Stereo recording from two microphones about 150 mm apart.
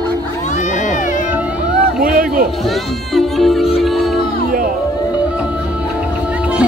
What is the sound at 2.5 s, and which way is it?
Music, centre (ahead or behind).